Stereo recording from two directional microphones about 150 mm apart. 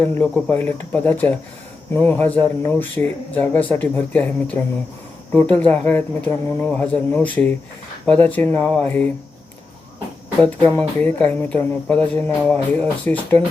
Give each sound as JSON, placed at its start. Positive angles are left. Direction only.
{"t": 0.0, "sound": "speech", "side_deg": 10}
{"t": 10.4, "sound": "speech", "side_deg": 15}